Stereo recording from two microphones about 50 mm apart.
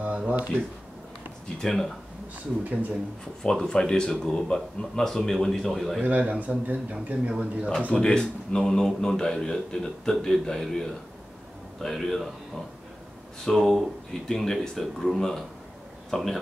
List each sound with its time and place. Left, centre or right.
0.0 s speech: right
1.6 s speech: centre
2.6 s speech: right
3.4 s a man's voice: centre
6.0 s a man's voice: right
7.9 s a man's voice: centre